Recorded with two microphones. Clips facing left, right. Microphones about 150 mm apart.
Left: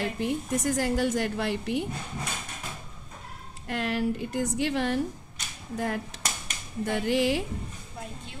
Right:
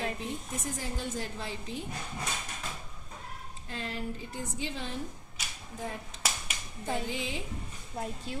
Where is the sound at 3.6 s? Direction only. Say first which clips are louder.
Left 10 dB; 75° left (ahead or behind).